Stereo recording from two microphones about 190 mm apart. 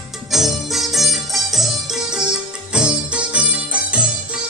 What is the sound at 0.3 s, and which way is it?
Music, centre (ahead or behind).